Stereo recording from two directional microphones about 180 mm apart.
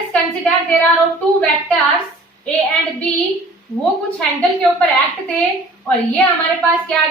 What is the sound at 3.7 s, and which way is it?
Speech, 15° left (ahead or behind).